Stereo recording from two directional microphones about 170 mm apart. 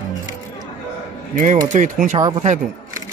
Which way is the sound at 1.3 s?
50° right (ahead or behind).